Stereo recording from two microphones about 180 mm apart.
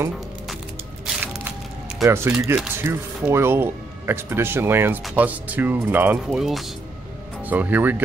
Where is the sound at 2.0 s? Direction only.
15° right (ahead or behind).